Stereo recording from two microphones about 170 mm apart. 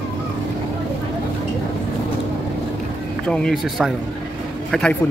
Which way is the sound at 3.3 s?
5° left (ahead or behind).